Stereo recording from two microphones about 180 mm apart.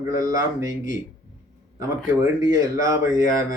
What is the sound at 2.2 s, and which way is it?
A man's voice, 20° right (ahead or behind).